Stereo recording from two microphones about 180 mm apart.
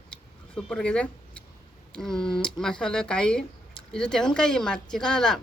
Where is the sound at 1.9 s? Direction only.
5° left (ahead or behind).